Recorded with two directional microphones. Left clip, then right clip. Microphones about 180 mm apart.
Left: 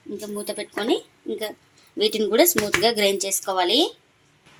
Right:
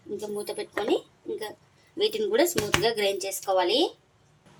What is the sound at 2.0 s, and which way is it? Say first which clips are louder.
Speech: left 5 dB; 40° left (ahead or behind).